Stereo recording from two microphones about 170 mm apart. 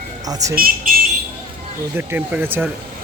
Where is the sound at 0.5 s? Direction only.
60° right (ahead or behind).